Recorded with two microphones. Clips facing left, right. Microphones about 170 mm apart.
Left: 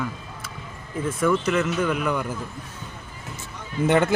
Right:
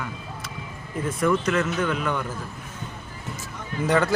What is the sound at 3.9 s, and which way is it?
Speech, 25° left (ahead or behind).